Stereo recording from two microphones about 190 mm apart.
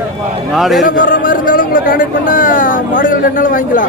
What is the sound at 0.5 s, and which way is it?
Speech, centre (ahead or behind).